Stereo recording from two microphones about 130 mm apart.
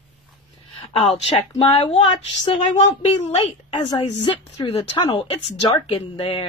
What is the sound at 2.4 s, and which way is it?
Speech, 55° left (ahead or behind).